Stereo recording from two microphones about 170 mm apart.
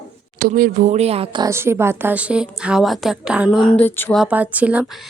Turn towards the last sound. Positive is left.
turn(degrees=-10)  # may be behind; listen again after turning